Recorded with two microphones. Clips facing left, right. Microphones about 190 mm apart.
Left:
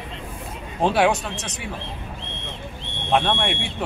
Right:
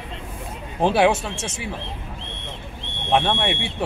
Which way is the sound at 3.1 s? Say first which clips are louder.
Right 1 dB; 20° right (ahead or behind).